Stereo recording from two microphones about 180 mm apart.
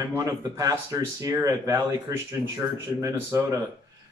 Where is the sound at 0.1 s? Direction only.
15° right (ahead or behind).